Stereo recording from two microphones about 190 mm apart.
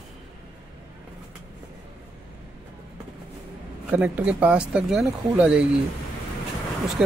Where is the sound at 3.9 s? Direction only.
5° right (ahead or behind).